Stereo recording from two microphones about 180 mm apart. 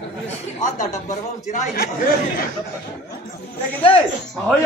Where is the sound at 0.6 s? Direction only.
45° left (ahead or behind).